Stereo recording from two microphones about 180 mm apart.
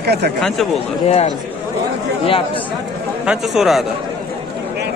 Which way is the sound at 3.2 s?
Centre (ahead or behind).